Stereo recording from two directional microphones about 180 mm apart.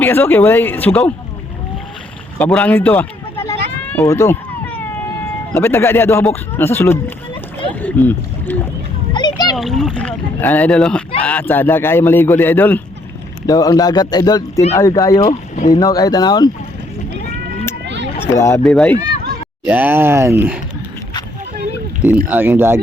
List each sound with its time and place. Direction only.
0.0 s a man's voice: 10° left (ahead or behind)
2.4 s sheep: 10° left (ahead or behind)
5.5 s a man's voice: 15° left (ahead or behind)
9.1 s splash: 25° left (ahead or behind)
9.6 s a man's voice: centre (ahead or behind)
13.5 s speech: 20° left (ahead or behind)
17.8 s a sound: 75° right (ahead or behind)
18.2 s a man's voice: 15° left (ahead or behind)
19.6 s speech: 10° right (ahead or behind)
22.3 s speech: 10° right (ahead or behind)